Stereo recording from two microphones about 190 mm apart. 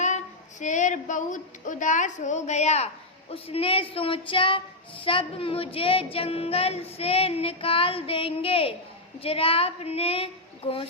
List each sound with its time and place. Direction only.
0.6 s a woman's voice: 40° left (ahead or behind)